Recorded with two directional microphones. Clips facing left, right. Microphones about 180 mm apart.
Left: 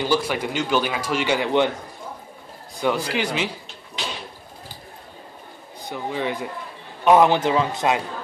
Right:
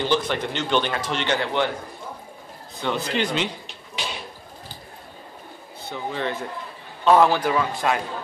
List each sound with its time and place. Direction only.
0.0 s a man's voice: 10° left (ahead or behind)
2.8 s a man's voice: 10° left (ahead or behind)
5.8 s a man's voice: 15° left (ahead or behind)